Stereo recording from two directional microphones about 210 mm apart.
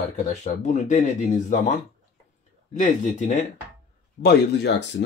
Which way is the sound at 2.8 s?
40° left (ahead or behind).